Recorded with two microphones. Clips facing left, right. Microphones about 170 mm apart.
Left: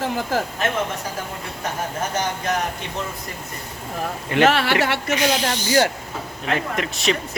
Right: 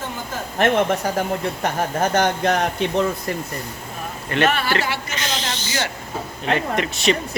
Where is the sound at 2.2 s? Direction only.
65° right (ahead or behind).